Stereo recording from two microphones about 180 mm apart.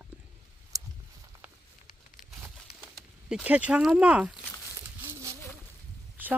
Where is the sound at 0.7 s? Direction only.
20° right (ahead or behind).